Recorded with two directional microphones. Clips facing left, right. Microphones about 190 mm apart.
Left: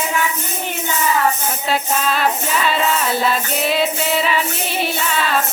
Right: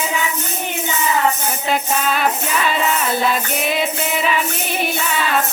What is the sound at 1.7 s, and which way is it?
Music, centre (ahead or behind).